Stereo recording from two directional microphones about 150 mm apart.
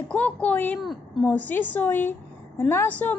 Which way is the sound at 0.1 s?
10° left (ahead or behind).